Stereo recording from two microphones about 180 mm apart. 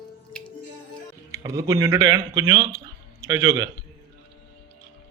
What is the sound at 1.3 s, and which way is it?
Speech, 15° right (ahead or behind).